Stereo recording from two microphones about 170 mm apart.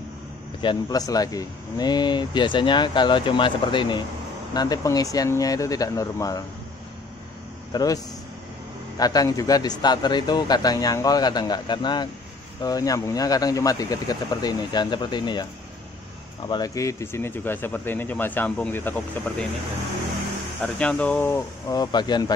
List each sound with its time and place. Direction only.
0.6 s speech: 25° left (ahead or behind)
7.7 s speech: 20° left (ahead or behind)
16.4 s speech: 25° left (ahead or behind)
20.6 s speech: 5° left (ahead or behind); by 22.2 s 25° left (ahead or behind)